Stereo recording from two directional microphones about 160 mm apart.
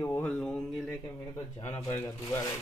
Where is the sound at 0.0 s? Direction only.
15° left (ahead or behind).